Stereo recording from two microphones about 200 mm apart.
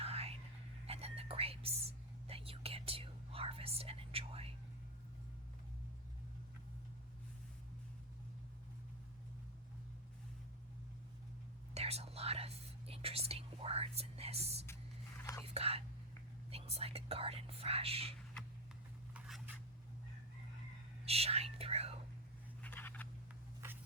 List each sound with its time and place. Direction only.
0.0 s whispering: 30° right (ahead or behind)
11.7 s speech: 30° right (ahead or behind)
15.2 s whispering: 15° left (ahead or behind)
15.4 s speech: 30° right (ahead or behind)
21.0 s whispering: 30° right (ahead or behind)
22.6 s writing: 10° left (ahead or behind)